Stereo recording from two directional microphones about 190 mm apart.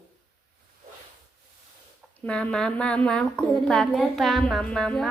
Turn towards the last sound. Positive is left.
turn(degrees=5)  # may be behind; listen again after turning